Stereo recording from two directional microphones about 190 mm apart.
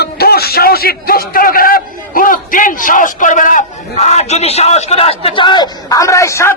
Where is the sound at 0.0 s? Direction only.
55° left (ahead or behind); by 6.6 s 15° left (ahead or behind).